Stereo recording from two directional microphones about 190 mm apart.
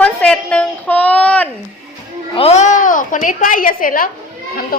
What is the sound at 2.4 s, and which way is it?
A woman's voice, 35° left (ahead or behind).